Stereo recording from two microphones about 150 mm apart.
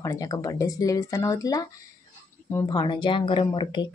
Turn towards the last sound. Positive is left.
turn(degrees=35)  # may be behind; listen again after turning